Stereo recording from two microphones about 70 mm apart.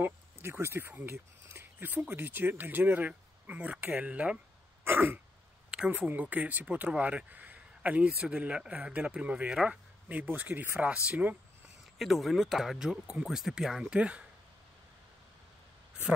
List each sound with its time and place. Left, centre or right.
0.0 s speech: right; by 4.4 s centre
4.8 s throat clearing: right
5.7 s a sound: centre
6.0 s a man's voice: right
9.7 s a sound: right
10.2 s speech: right
12.0 s speech: centre
13.8 s a man's voice: centre